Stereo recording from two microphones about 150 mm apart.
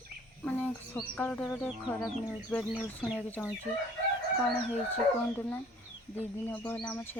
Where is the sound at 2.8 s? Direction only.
5° right (ahead or behind).